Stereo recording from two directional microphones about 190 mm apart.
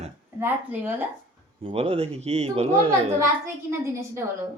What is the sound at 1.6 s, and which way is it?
Speech, 30° right (ahead or behind).